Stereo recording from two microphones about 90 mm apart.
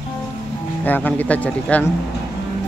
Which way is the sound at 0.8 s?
20° left (ahead or behind).